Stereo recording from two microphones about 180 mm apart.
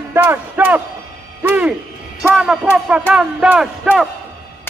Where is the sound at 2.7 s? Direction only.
5° right (ahead or behind).